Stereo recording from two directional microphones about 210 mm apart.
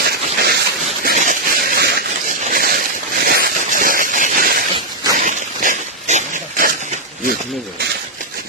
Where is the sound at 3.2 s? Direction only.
45° right (ahead or behind).